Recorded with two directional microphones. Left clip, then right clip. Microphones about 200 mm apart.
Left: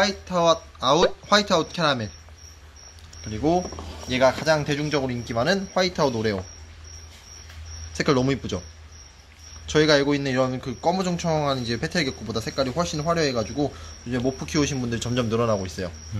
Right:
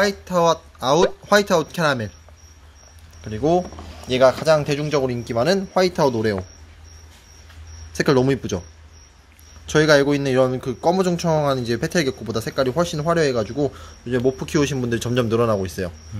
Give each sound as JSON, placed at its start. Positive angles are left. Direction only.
{"t": 0.0, "sound": "speech", "side_deg": -50}
{"t": 3.3, "sound": "speech", "side_deg": -45}
{"t": 7.9, "sound": "speech", "side_deg": -45}
{"t": 9.7, "sound": "speech", "side_deg": -45}